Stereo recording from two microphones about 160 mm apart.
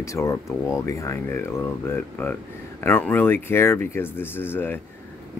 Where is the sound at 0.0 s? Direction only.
20° left (ahead or behind).